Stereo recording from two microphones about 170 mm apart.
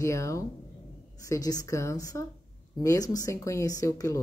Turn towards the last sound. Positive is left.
turn(degrees=20)  # may be behind; listen again after turning